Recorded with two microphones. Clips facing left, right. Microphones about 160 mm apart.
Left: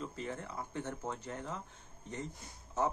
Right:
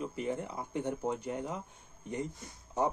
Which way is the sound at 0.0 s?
15° right (ahead or behind).